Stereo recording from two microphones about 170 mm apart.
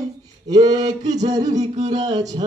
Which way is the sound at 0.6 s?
20° right (ahead or behind).